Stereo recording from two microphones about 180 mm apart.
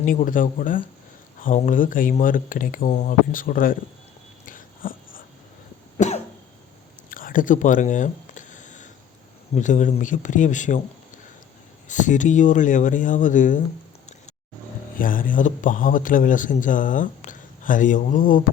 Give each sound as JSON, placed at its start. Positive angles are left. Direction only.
{"t": 0.0, "sound": "speech", "side_deg": 45}
{"t": 4.4, "sound": "dog", "side_deg": 50}
{"t": 6.0, "sound": "cough", "side_deg": 40}
{"t": 7.1, "sound": "a sound", "side_deg": 50}
{"t": 9.6, "sound": "speech", "side_deg": 45}
{"t": 11.9, "sound": "speech", "side_deg": 45}
{"t": 14.9, "sound": "speech", "side_deg": 50}